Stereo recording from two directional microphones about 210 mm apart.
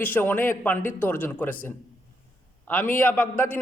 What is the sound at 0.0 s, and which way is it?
A man's voice, 10° left (ahead or behind).